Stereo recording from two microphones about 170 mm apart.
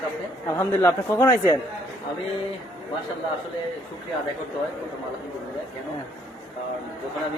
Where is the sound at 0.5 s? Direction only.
15° left (ahead or behind).